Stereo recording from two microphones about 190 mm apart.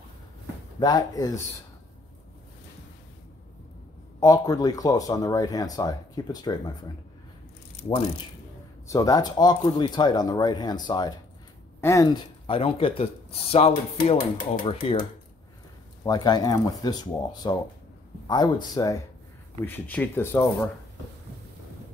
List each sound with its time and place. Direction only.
0.7 s speech: 20° left (ahead or behind)
4.2 s speech: 20° left (ahead or behind)
8.8 s speech: 15° left (ahead or behind)
16.0 s speech: 20° left (ahead or behind)
19.6 s speech: 10° left (ahead or behind)